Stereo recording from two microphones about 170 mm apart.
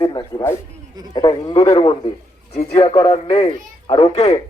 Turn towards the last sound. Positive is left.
turn(degrees=35)  # may be behind; listen again after turning